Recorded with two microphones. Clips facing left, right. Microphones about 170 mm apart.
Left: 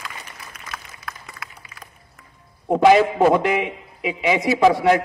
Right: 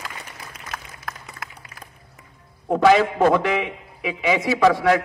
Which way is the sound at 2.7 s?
20° left (ahead or behind).